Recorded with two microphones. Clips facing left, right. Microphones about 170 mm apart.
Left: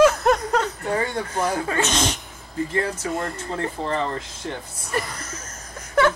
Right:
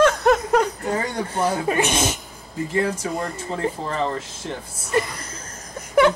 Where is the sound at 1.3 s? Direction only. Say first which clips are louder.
Right 5 dB; 30° right (ahead or behind).